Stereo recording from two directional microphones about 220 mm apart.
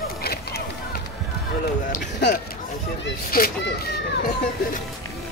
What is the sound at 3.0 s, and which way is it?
Children playing, 45° left (ahead or behind).